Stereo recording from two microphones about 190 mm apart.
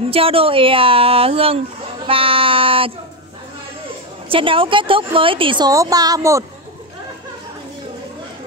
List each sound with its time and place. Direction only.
0.1 s a woman's voice: 30° right (ahead or behind)
4.3 s a woman's voice: 30° right (ahead or behind)